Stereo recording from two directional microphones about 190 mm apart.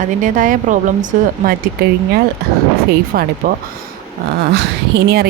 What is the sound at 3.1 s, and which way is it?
Speech, 50° right (ahead or behind).